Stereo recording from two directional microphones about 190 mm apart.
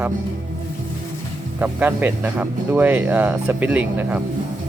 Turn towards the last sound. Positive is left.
turn(degrees=-10)  # may be behind; listen again after turning